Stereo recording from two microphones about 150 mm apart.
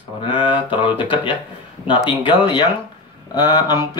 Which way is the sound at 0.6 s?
35° left (ahead or behind).